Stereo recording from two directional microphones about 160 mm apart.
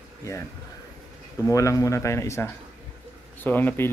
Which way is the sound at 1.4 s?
20° left (ahead or behind).